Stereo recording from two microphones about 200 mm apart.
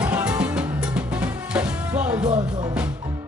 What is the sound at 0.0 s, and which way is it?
Music, 5° right (ahead or behind).